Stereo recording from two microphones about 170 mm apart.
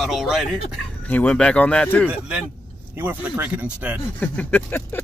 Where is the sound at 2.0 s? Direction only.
5° right (ahead or behind).